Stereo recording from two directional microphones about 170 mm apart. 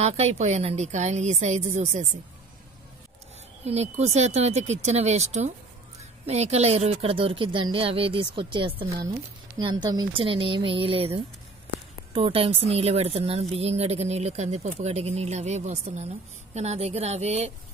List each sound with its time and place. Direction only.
0.0 s speech: 40° right (ahead or behind)
3.6 s speech: 40° right (ahead or behind)